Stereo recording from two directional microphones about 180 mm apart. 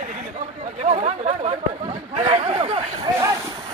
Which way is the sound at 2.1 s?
30° right (ahead or behind).